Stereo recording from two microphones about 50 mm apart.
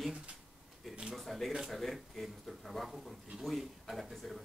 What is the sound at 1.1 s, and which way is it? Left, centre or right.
Speech, centre.